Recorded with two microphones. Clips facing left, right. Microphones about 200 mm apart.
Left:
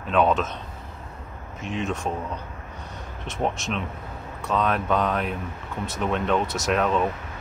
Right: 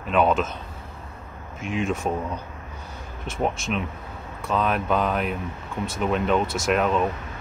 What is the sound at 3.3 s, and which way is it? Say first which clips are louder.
Speech: right 1 dB; centre (ahead or behind).